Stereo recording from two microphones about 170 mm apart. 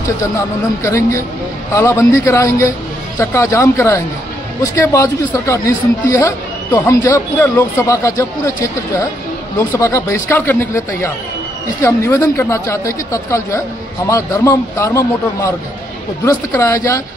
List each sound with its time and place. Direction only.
0.0 s speech: 20° left (ahead or behind)